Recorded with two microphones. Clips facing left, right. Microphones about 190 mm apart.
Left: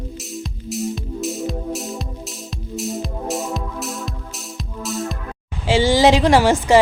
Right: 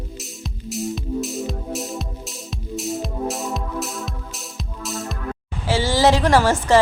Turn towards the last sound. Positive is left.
turn(degrees=15)  # may be behind; listen again after turning